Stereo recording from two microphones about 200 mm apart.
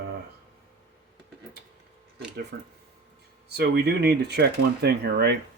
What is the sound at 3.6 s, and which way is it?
Speech, 55° right (ahead or behind).